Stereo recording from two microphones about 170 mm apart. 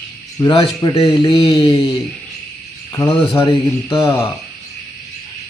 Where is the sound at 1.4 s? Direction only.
30° left (ahead or behind).